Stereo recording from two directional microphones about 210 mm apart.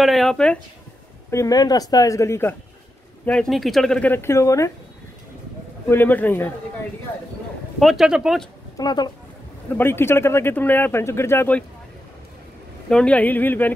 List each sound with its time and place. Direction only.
0.0 s speech: centre (ahead or behind)
1.3 s speech: 15° left (ahead or behind)
5.9 s speech: 10° left (ahead or behind)
7.8 s speech: centre (ahead or behind)
8.7 s speech: 20° left (ahead or behind)
12.9 s speech: 5° left (ahead or behind)